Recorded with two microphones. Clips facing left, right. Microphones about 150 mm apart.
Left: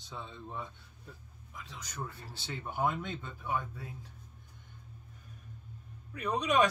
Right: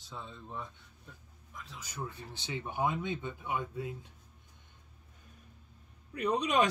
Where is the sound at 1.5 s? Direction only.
5° right (ahead or behind).